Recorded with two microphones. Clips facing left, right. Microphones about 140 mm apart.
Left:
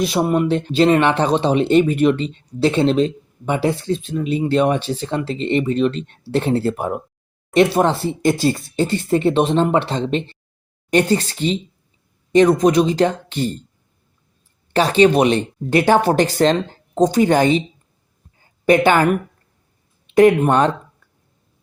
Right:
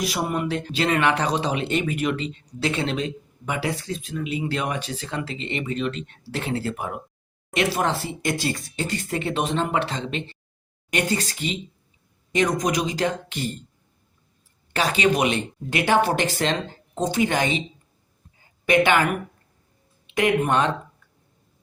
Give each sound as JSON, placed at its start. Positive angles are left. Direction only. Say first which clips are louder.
{"t": 0.0, "sound": "speech", "louder": "left 8 dB", "side_deg": 30}
{"t": 14.7, "sound": "speech", "louder": "left 8 dB", "side_deg": 30}
{"t": 20.1, "sound": "speech", "louder": "left 9 dB", "side_deg": 40}